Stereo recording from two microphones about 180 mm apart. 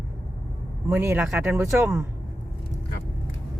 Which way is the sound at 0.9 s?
15° right (ahead or behind).